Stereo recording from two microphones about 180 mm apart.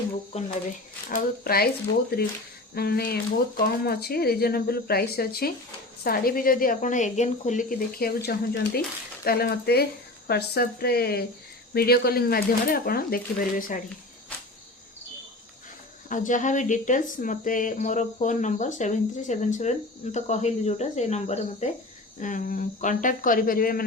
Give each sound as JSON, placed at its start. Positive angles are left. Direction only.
{"t": 1.1, "sound": "speech", "side_deg": 60}
{"t": 16.0, "sound": "speech", "side_deg": 45}